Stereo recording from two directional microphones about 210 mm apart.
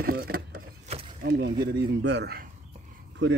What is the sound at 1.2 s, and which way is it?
Speech, 55° right (ahead or behind).